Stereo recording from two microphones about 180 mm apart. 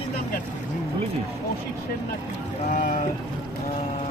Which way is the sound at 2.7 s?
45° left (ahead or behind).